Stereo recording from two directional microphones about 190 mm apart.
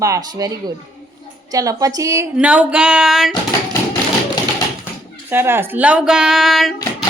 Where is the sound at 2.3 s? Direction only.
5° right (ahead or behind).